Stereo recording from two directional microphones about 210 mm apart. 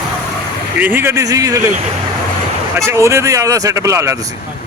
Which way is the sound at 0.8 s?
10° right (ahead or behind).